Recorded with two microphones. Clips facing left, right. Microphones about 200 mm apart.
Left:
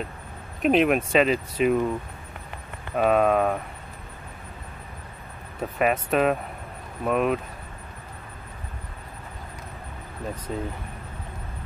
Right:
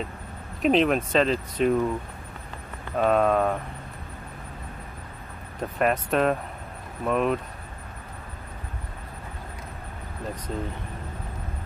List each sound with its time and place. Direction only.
0.6 s speech: 5° left (ahead or behind)
3.0 s speech: 5° left (ahead or behind)
5.6 s speech: 5° left (ahead or behind)
10.5 s speech: 5° left (ahead or behind)